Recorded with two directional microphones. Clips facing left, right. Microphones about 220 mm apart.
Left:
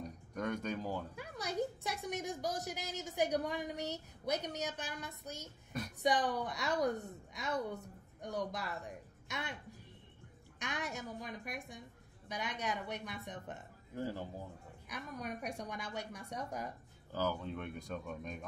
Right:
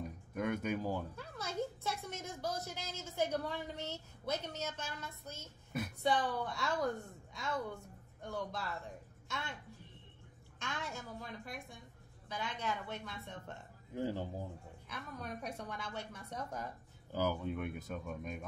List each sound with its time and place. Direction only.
0.0 s speech: 5° right (ahead or behind)
1.1 s a woman's voice: 15° left (ahead or behind)
5.7 s speech: 5° right (ahead or behind)
6.0 s a woman's voice: 20° left (ahead or behind)
10.6 s a woman's voice: 20° left (ahead or behind)
13.9 s speech: 15° right (ahead or behind)
14.9 s a woman's voice: 15° left (ahead or behind)
17.1 s speech: 10° right (ahead or behind)